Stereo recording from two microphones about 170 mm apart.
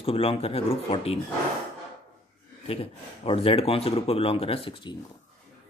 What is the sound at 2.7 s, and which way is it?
Speech, 35° left (ahead or behind).